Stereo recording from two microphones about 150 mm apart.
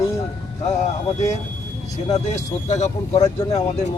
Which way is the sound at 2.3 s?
50° left (ahead or behind).